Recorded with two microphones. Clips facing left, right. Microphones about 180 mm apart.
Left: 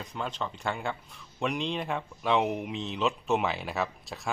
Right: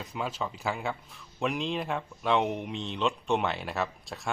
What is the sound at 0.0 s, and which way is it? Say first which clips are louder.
Speech: right 1 dB; 5° right (ahead or behind).